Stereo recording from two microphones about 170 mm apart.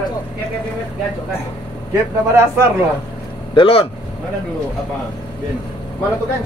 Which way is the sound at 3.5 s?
30° left (ahead or behind).